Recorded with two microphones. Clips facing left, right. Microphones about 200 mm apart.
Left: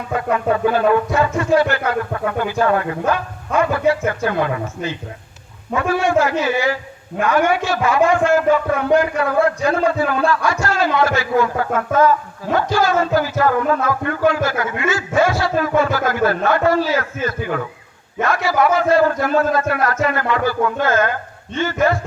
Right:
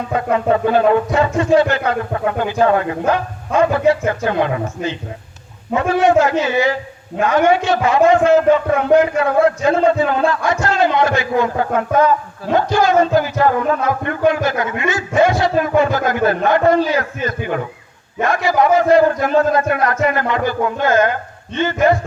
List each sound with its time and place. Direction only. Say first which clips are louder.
0.3 s a man's voice: right 3 dB; 25° right (ahead or behind)